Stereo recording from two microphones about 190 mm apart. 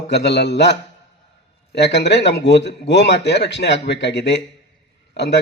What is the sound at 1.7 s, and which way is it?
A man's voice, 65° left (ahead or behind).